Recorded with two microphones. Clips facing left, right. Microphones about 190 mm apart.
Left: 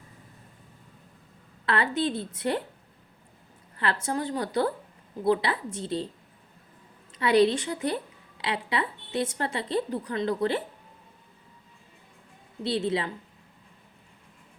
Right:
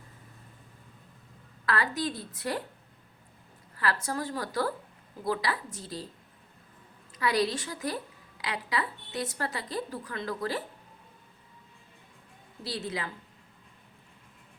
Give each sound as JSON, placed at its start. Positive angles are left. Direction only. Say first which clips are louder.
{"t": 1.6, "sound": "a woman's voice", "louder": "left 4 dB", "side_deg": 25}
{"t": 4.0, "sound": "a woman's voice", "louder": "left 4 dB", "side_deg": 20}
{"t": 7.1, "sound": "a woman's voice", "louder": "left 7 dB", "side_deg": 25}
{"t": 12.6, "sound": "a woman's voice", "louder": "left 8 dB", "side_deg": 25}